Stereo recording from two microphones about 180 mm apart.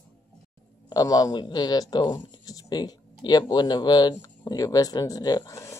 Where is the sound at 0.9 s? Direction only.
20° left (ahead or behind).